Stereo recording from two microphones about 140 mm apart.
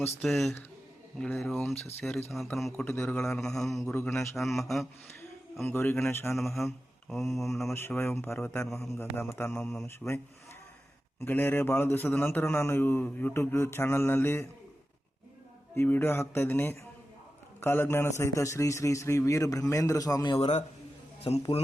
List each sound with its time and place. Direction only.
0.2 s a man's voice: centre (ahead or behind)
3.9 s a man's voice: 15° left (ahead or behind)
4.2 s a man's voice: centre (ahead or behind)
5.6 s a man's voice: 15° left (ahead or behind)
6.3 s a man's voice: centre (ahead or behind)
7.7 s a man's voice: 15° left (ahead or behind)
11.3 s a man's voice: 15° left (ahead or behind)
15.7 s a man's voice: 15° left (ahead or behind)
20.4 s a man's voice: 50° left (ahead or behind)
21.2 s a man's voice: 35° left (ahead or behind)